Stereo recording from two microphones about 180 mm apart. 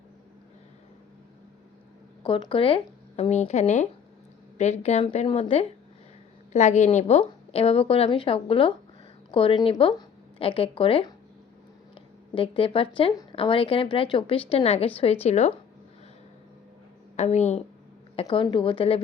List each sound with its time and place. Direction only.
2.2 s a woman's voice: 30° left (ahead or behind)
12.3 s speech: 30° left (ahead or behind)
17.2 s a woman's voice: 40° left (ahead or behind)